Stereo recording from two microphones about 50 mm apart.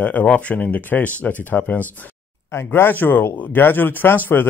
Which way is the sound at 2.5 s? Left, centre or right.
Left.